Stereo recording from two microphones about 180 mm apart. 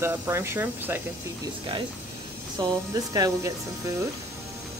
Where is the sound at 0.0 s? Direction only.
15° right (ahead or behind).